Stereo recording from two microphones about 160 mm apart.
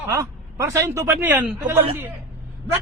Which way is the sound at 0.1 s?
20° right (ahead or behind).